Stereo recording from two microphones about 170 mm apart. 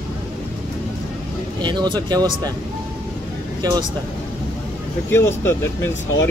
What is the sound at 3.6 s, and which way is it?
Speech, 25° right (ahead or behind).